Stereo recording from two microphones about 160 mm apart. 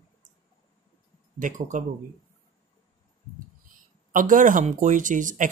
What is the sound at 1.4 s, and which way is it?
Speech, 55° right (ahead or behind).